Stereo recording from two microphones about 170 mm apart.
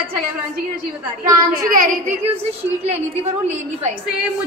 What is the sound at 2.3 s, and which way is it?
Speech, 40° right (ahead or behind).